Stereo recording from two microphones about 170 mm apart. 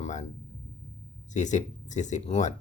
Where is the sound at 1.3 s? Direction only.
45° left (ahead or behind).